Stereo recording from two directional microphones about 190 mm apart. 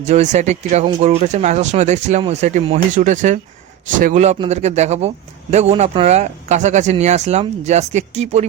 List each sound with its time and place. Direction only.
0.0 s a man's voice: 35° right (ahead or behind)